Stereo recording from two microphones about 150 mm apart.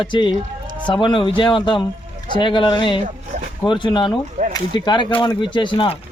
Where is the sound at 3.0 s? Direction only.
55° right (ahead or behind).